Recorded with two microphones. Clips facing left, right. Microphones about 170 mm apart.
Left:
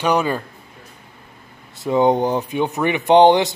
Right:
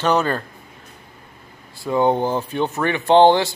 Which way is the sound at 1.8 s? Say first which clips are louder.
Left 2 dB; 20° left (ahead or behind).